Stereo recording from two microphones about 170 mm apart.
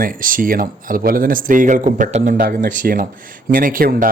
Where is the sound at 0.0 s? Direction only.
55° right (ahead or behind).